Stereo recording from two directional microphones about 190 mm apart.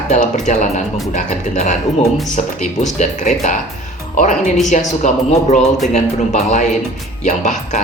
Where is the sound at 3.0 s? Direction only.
40° left (ahead or behind).